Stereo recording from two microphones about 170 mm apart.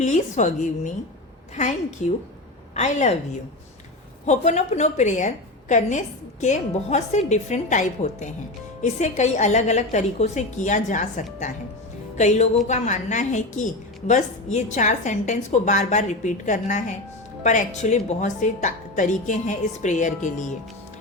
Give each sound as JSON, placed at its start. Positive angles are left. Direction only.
{"t": 0.0, "sound": "a woman's voice", "side_deg": 45}
{"t": 1.5, "sound": "a woman's voice", "side_deg": 45}
{"t": 4.3, "sound": "a woman's voice", "side_deg": 40}